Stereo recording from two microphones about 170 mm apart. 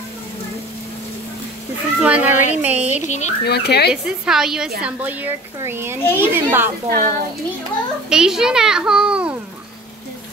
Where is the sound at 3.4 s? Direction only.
70° left (ahead or behind).